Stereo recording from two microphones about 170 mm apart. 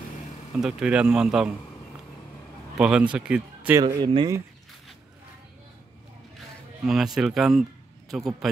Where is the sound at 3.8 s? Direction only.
25° right (ahead or behind).